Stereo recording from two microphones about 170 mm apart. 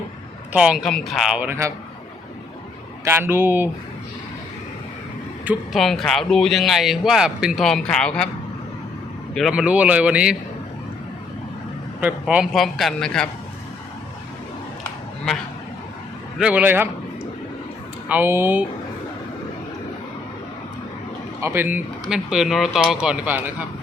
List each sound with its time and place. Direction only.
0.5 s speech: 5° right (ahead or behind)
1.5 s speech: 15° right (ahead or behind)
3.0 s speech: 15° right (ahead or behind)
5.5 s speech: centre (ahead or behind)
9.3 s speech: centre (ahead or behind)
11.9 s speech: 5° right (ahead or behind)
16.4 s speech: 10° right (ahead or behind)
18.1 s speech: 15° right (ahead or behind)
21.4 s speech: 10° right (ahead or behind)